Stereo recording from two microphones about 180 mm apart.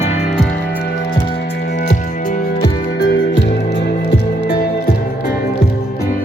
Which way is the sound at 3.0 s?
70° left (ahead or behind).